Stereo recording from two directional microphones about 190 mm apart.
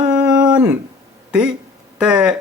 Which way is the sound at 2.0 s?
5° right (ahead or behind).